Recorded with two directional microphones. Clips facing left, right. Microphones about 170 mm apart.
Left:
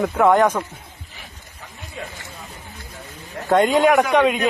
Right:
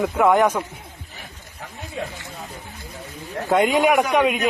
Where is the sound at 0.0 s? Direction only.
10° right (ahead or behind).